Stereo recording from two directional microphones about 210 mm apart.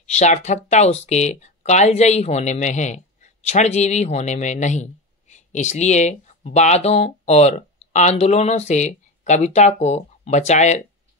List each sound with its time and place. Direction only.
0.1 s speech: 35° left (ahead or behind)